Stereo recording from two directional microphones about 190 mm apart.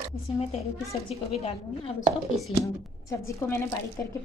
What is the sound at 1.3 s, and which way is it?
Speech, 30° left (ahead or behind).